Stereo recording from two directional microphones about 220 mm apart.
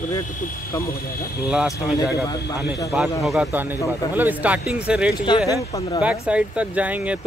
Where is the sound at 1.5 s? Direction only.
5° right (ahead or behind).